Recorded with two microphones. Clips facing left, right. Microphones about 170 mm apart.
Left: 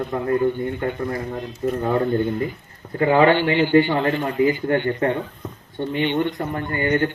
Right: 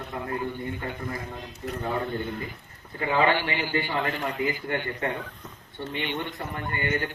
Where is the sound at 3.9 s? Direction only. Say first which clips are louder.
Left 8 dB; 40° left (ahead or behind).